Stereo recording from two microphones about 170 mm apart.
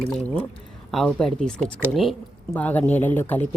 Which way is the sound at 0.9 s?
Centre (ahead or behind).